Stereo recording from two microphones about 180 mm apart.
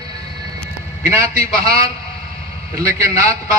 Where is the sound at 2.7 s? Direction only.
15° right (ahead or behind).